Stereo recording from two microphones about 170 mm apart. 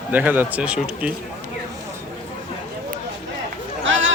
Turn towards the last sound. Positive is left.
turn(degrees=-90)